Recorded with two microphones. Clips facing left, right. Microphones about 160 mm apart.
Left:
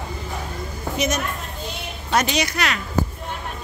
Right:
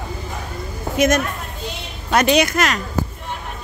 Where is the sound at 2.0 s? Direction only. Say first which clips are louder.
Right 6 dB; 60° right (ahead or behind); by 2.8 s 45° right (ahead or behind).